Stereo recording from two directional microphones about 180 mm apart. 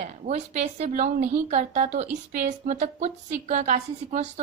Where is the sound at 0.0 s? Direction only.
40° right (ahead or behind).